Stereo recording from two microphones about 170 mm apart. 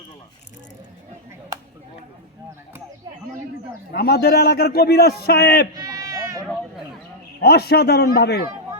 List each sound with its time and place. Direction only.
3.9 s a man's voice: 65° left (ahead or behind)
5.7 s bleat: 20° right (ahead or behind)
7.4 s a man's voice: 70° left (ahead or behind)